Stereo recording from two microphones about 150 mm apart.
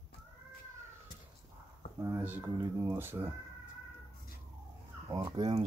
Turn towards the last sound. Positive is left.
turn(degrees=-30)  # may be behind; listen again after turning